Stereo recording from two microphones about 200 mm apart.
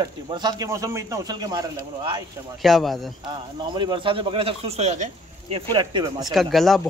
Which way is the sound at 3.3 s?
25° right (ahead or behind).